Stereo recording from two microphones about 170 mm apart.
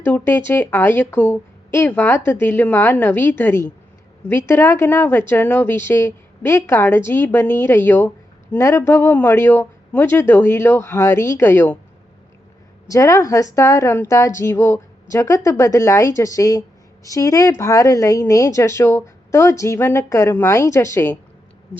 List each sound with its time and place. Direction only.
0.0 s speech: 15° left (ahead or behind)
12.9 s a woman's voice: 20° left (ahead or behind)